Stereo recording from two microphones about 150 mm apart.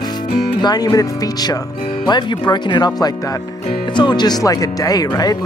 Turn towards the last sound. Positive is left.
turn(degrees=25)  # may be behind; listen again after turning